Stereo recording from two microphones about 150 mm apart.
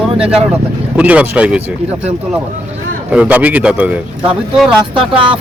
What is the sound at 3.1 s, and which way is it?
Speech, 10° right (ahead or behind).